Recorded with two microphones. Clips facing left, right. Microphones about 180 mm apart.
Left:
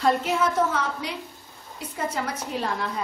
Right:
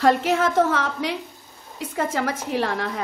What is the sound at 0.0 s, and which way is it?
A woman's voice, 85° right.